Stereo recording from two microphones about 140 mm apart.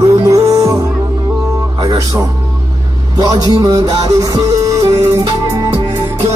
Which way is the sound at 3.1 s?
25° right (ahead or behind).